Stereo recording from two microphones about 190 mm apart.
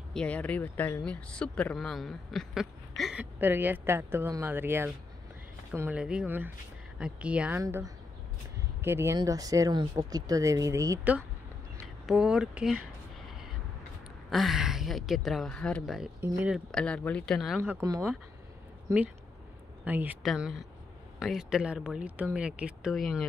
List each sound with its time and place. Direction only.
0.1 s speech: 5° left (ahead or behind)
7.6 s speech: 20° right (ahead or behind)
12.1 s speech: 5° right (ahead or behind)
14.3 s speech: centre (ahead or behind)
16.7 s speech: 5° left (ahead or behind)
17.6 s speech: 10° right (ahead or behind)
19.8 s speech: 10° right (ahead or behind)